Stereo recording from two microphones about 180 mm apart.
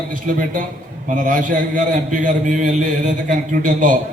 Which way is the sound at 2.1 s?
45° right (ahead or behind).